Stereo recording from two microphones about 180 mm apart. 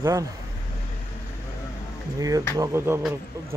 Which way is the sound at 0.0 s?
20° right (ahead or behind).